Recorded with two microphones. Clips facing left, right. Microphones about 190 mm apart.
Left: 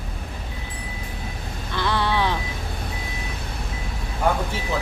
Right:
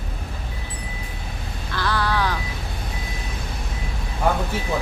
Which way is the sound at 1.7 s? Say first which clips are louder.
Left 1 dB; 20° left (ahead or behind).